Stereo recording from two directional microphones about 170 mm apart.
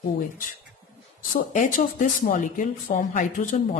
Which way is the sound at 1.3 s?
50° left (ahead or behind).